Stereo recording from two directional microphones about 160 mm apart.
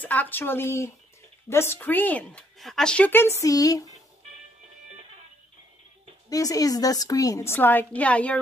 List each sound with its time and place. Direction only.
0.0 s a woman's voice: 10° left (ahead or behind)
3.3 s a woman's voice: 20° left (ahead or behind)
6.3 s a woman's voice: 20° left (ahead or behind)